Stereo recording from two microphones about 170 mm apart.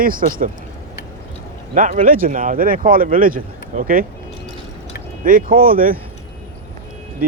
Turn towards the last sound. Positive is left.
turn(degrees=-60)  # may be behind; listen again after turning